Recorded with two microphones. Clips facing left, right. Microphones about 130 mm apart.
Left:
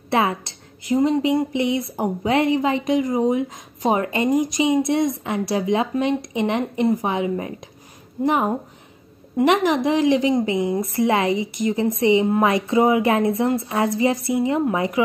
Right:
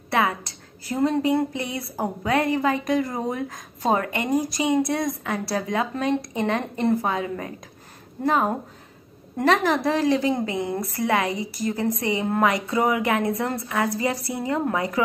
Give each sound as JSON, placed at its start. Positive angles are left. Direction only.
{"t": 0.1, "sound": "a woman's voice", "side_deg": 25}